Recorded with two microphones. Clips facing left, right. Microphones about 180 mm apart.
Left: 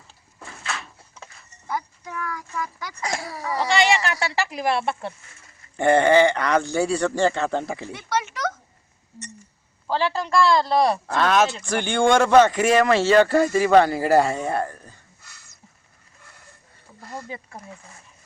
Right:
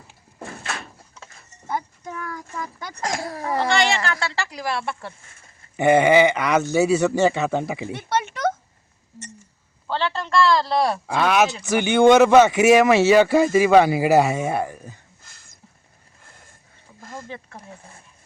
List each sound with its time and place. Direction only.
0.5 s door: 35° right (ahead or behind)
1.6 s speech: 25° right (ahead or behind)
3.2 s a sound: 50° right (ahead or behind)
4.0 s speech: 20° left (ahead or behind)
5.7 s speech: 5° right (ahead or behind)
7.9 s a sound: 25° right (ahead or behind)
9.8 s a man's voice: 10° left (ahead or behind)
11.2 s speech: 10° right (ahead or behind)
17.2 s a man's voice: 5° left (ahead or behind)